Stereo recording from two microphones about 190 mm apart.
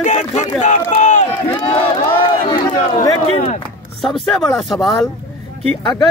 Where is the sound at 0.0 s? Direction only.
40° left (ahead or behind).